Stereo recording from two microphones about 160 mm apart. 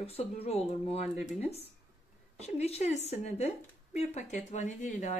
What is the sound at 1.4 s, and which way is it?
A woman's voice, 40° left (ahead or behind).